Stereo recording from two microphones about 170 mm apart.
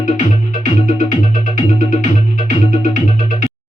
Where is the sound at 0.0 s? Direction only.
50° left (ahead or behind).